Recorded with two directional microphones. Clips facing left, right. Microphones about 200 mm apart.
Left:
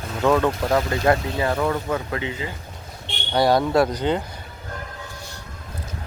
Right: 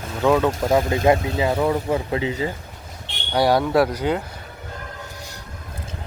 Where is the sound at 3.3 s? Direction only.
10° right (ahead or behind).